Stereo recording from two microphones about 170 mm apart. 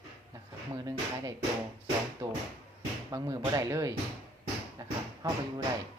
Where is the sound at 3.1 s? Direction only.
20° right (ahead or behind).